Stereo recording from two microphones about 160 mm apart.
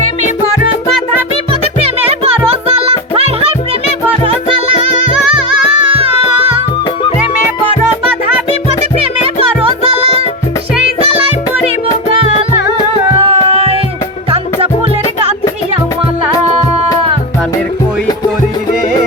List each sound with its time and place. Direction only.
1.6 s music: 40° right (ahead or behind)
5.9 s music: 35° right (ahead or behind)
9.6 s music: 35° right (ahead or behind)
13.2 s music: 35° right (ahead or behind)